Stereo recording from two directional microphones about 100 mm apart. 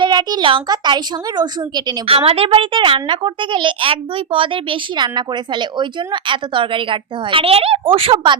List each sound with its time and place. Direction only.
0.0 s a child's voice: 45° right (ahead or behind)
2.0 s a child's voice: 70° right (ahead or behind)